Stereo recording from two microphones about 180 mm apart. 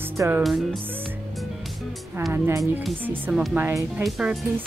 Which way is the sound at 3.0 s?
10° right (ahead or behind).